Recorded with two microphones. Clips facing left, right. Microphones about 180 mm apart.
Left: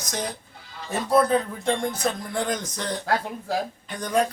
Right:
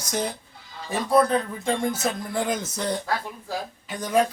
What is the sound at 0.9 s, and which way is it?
Speech, 5° left (ahead or behind).